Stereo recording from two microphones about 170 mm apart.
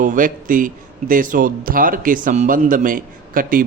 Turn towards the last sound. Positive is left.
turn(degrees=-55)  # may be behind; listen again after turning